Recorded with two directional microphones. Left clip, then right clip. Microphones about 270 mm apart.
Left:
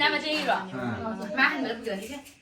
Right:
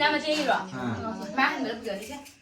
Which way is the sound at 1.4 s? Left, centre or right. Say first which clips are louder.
Left 1 dB; right.